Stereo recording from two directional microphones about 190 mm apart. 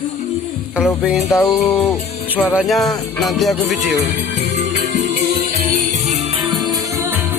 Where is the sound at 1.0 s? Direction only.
5° right (ahead or behind).